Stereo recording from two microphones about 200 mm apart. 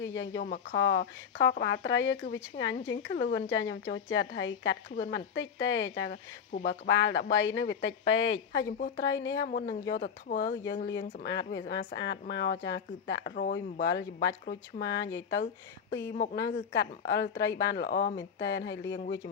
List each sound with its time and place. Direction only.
0.0 s a woman's voice: 70° left (ahead or behind)
10.0 s speech: 45° left (ahead or behind)
10.5 s a woman's voice: 65° left (ahead or behind)
16.1 s speech: 45° left (ahead or behind)
16.5 s speech: 60° left (ahead or behind)